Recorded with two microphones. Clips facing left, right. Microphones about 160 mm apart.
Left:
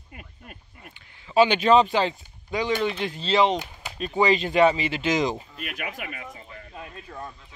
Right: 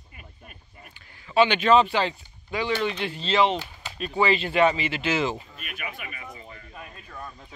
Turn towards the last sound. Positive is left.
turn(degrees=25)  # may be behind; listen again after turning